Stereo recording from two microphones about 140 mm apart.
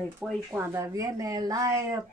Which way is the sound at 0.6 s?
25° right (ahead or behind).